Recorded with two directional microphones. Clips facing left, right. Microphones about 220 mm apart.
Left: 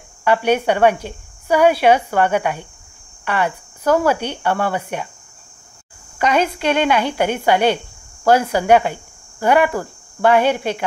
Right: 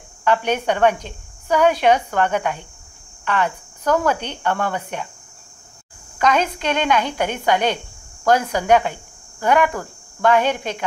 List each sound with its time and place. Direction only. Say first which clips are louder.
0.2 s speech: left 3 dB; 10° left (ahead or behind)
6.1 s speech: left 1 dB; 10° left (ahead or behind)